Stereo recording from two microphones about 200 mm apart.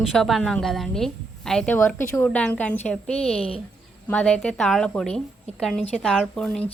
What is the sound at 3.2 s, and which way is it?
Speech, 30° left (ahead or behind).